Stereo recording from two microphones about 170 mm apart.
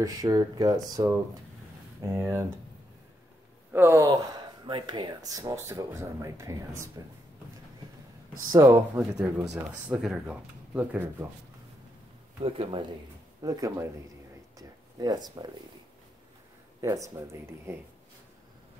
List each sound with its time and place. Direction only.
0.0 s speech: 20° right (ahead or behind)
3.7 s speech: 15° right (ahead or behind)
8.5 s speech: 20° right (ahead or behind)
9.1 s speech: 5° right (ahead or behind)
12.4 s speech: 30° right (ahead or behind)
13.4 s speech: 20° right (ahead or behind)
14.6 s a sound: 25° right (ahead or behind)
16.8 s speech: 20° right (ahead or behind)